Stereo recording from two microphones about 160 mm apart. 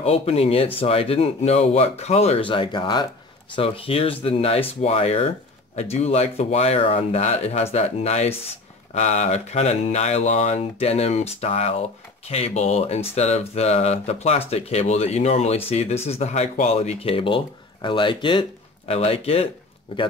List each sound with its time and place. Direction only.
0.0 s speech: 40° left (ahead or behind)